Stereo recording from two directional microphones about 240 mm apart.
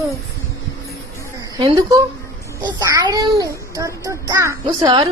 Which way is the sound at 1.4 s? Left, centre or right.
Centre.